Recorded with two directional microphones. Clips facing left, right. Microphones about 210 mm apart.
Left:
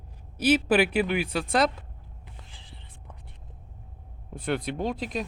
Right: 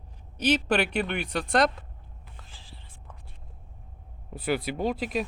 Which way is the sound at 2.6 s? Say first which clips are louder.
Left 1 dB; 20° left (ahead or behind).